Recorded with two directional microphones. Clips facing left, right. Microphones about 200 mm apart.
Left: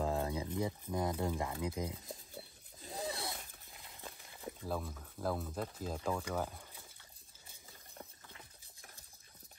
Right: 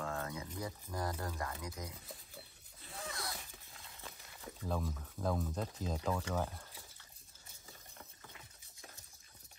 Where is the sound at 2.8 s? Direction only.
35° left (ahead or behind).